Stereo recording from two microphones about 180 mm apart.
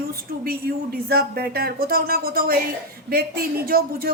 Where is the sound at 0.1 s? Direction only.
55° right (ahead or behind).